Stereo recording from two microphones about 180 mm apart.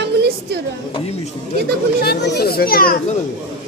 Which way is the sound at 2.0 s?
60° left (ahead or behind).